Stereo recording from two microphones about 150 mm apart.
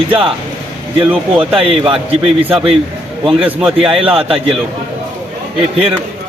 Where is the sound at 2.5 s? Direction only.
5° right (ahead or behind).